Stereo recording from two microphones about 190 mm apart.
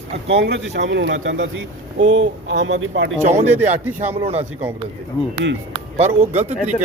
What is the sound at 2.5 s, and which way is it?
Speech, 75° right (ahead or behind).